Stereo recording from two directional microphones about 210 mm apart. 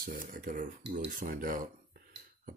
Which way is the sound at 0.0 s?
45° right (ahead or behind).